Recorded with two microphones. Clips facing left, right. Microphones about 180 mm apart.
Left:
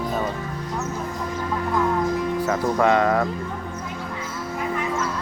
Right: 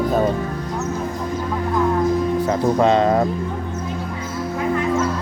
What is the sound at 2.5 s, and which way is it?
Speech, 25° right (ahead or behind).